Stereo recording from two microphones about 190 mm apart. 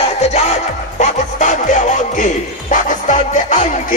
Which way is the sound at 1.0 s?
40° left (ahead or behind).